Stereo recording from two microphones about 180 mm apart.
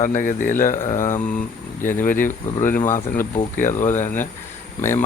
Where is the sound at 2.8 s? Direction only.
15° left (ahead or behind).